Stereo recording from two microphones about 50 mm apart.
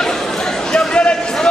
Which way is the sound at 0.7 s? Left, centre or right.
Centre.